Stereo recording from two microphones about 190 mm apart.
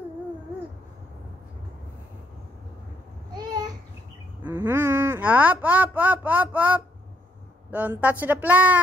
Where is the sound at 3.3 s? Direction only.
20° right (ahead or behind).